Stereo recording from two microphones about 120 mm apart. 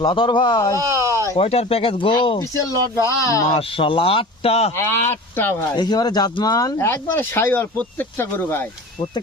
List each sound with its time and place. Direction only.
0.0 s speech: 40° left (ahead or behind)
0.8 s a sound: 25° right (ahead or behind)
1.4 s speech: 55° left (ahead or behind)
2.6 s speech: 25° left (ahead or behind)
3.4 s speech: 50° left (ahead or behind)
4.8 s speech: 20° left (ahead or behind)
5.7 s speech: 35° left (ahead or behind)
6.7 s speech: 20° left (ahead or behind)